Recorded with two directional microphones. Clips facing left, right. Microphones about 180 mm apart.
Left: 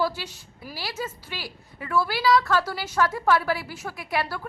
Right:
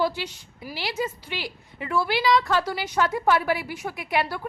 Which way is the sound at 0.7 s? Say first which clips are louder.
Right 4 dB; 20° right (ahead or behind).